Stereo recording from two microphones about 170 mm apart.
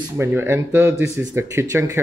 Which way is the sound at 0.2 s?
15° right (ahead or behind).